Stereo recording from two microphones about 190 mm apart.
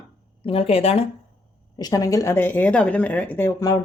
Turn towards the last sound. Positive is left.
turn(degrees=15)  # may be behind; listen again after turning